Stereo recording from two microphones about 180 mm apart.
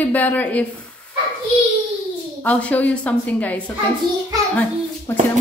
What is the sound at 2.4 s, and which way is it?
A woman's voice, 10° left (ahead or behind).